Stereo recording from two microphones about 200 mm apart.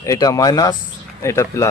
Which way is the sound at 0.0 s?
15° left (ahead or behind).